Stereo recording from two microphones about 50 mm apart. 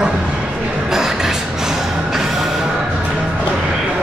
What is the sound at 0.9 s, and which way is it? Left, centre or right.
Music, centre.